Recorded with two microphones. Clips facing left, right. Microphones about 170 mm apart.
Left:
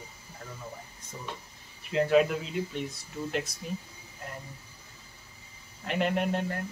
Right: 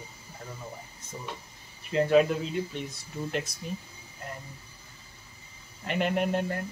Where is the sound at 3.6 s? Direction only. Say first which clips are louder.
Even; centre (ahead or behind).